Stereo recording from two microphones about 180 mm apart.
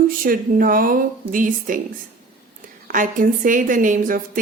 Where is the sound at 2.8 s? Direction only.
45° right (ahead or behind).